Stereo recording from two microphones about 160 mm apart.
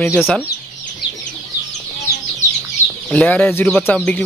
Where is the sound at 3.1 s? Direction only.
10° left (ahead or behind).